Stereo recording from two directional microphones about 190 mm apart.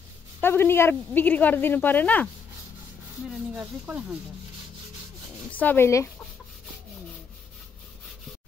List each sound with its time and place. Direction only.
0.4 s speech: 10° left (ahead or behind)
3.5 s speech: 5° right (ahead or behind)
5.5 s speech: 10° left (ahead or behind)